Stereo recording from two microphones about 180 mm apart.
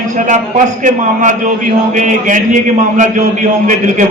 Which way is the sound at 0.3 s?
45° right (ahead or behind).